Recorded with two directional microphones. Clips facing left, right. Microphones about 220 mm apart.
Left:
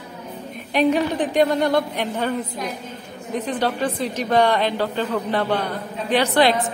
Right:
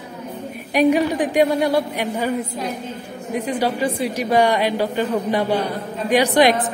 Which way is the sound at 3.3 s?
10° right (ahead or behind).